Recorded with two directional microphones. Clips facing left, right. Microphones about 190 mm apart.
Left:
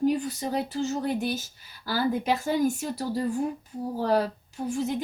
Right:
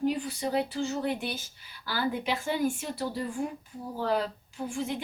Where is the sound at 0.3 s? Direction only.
45° left (ahead or behind).